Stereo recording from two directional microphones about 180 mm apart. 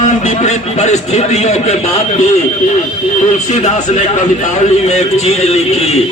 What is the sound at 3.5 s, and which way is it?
A man's voice, 40° left (ahead or behind).